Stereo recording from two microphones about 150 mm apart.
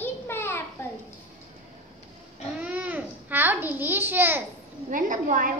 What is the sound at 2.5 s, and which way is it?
Babbling, 10° right (ahead or behind).